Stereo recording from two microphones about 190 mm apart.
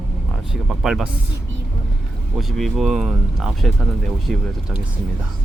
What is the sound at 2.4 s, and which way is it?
Speech, centre (ahead or behind).